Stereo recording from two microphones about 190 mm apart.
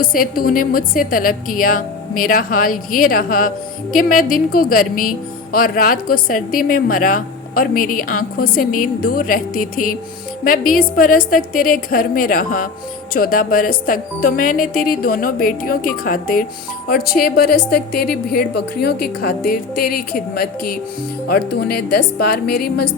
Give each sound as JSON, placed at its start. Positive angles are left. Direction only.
{"t": 0.0, "sound": "a woman's voice", "side_deg": 50}